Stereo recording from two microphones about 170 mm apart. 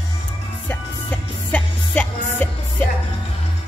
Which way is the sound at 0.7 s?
10° left (ahead or behind).